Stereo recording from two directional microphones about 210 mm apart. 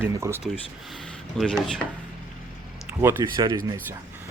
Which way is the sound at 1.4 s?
Centre (ahead or behind).